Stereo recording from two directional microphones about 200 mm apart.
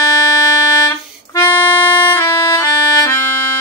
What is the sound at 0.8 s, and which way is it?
Music, 15° left (ahead or behind).